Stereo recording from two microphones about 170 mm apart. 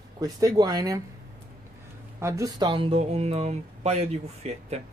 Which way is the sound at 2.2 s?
20° right (ahead or behind).